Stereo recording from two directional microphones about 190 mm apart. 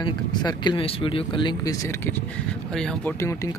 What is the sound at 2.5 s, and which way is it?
Speech, 5° left (ahead or behind).